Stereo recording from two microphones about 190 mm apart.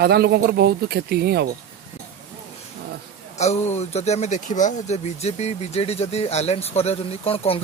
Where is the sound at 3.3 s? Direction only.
35° left (ahead or behind).